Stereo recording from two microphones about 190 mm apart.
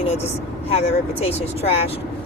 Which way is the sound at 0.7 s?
30° left (ahead or behind).